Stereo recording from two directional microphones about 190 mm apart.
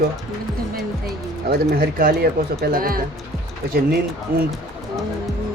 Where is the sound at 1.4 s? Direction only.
55° right (ahead or behind).